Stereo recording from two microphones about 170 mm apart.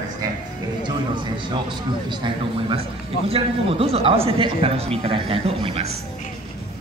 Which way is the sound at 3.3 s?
35° right (ahead or behind).